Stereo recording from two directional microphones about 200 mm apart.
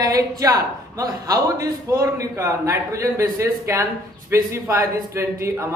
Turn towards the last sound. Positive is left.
turn(degrees=-15)  # may be behind; listen again after turning